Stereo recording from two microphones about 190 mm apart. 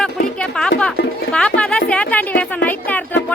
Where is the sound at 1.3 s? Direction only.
5° left (ahead or behind).